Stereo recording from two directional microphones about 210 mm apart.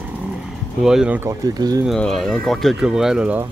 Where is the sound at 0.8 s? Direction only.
5° right (ahead or behind).